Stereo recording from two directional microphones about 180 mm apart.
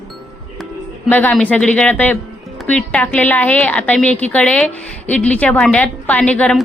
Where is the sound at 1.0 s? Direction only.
10° left (ahead or behind).